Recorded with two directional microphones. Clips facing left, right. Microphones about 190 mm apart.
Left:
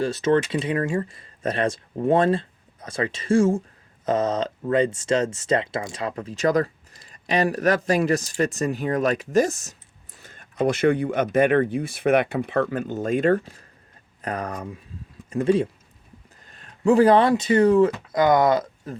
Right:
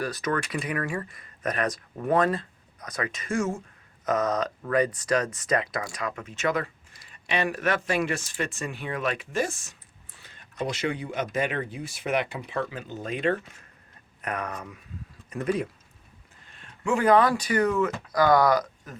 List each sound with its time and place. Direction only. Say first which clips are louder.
0.0 s speech: left 8 dB; 25° left (ahead or behind)
16.5 s speech: left 8 dB; 40° left (ahead or behind)